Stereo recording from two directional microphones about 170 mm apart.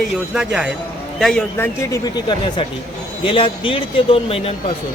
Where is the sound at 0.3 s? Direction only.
5° right (ahead or behind).